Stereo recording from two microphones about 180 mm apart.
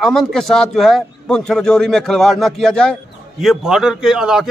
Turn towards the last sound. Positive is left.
turn(degrees=-5)  # may be behind; listen again after turning